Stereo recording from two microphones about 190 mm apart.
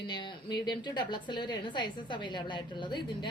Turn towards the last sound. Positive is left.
turn(degrees=25)  # may be behind; listen again after turning